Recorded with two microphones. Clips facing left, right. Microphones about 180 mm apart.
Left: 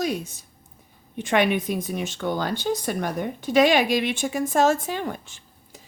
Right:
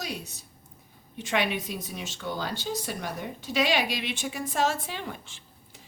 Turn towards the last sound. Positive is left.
turn(degrees=45)  # may be behind; listen again after turning